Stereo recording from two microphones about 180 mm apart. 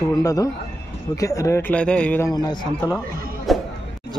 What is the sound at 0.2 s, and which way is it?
A man's voice, 20° left (ahead or behind).